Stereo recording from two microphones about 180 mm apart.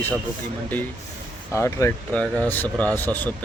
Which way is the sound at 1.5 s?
15° left (ahead or behind).